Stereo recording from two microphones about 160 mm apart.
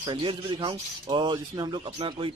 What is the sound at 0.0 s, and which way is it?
Speech, 30° right (ahead or behind).